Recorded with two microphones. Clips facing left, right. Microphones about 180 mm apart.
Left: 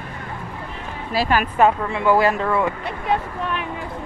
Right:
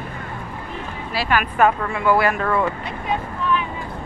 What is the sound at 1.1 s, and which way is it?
Speech, 35° left (ahead or behind).